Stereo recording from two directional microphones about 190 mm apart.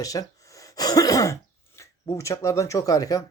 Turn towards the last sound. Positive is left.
turn(degrees=20)  # may be behind; listen again after turning